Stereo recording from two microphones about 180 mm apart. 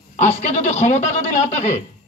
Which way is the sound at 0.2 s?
40° left (ahead or behind).